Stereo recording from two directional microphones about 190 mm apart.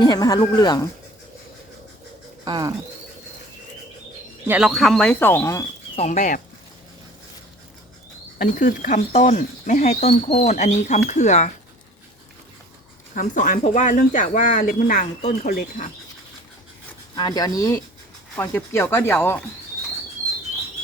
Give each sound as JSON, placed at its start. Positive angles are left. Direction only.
{"t": 0.0, "sound": "speech", "side_deg": 20}
{"t": 2.4, "sound": "speech", "side_deg": -20}
{"t": 4.4, "sound": "speech", "side_deg": -5}
{"t": 6.0, "sound": "speech", "side_deg": 40}
{"t": 8.4, "sound": "speech", "side_deg": 45}
{"t": 13.1, "sound": "speech", "side_deg": 45}
{"t": 17.2, "sound": "speech", "side_deg": 20}